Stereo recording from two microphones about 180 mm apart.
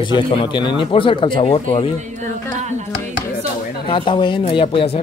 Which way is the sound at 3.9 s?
30° left (ahead or behind).